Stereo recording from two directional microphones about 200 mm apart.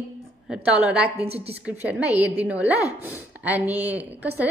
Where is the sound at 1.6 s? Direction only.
10° right (ahead or behind).